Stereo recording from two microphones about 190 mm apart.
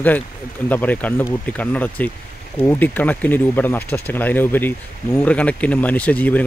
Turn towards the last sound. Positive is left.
turn(degrees=10)  # may be behind; listen again after turning